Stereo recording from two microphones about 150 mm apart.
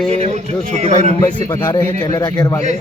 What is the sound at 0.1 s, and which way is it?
A man's voice, 45° right (ahead or behind).